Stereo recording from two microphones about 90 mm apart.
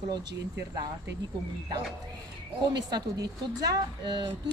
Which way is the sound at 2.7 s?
50° right (ahead or behind).